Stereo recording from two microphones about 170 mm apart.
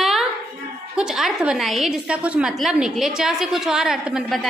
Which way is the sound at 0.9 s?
5° right (ahead or behind).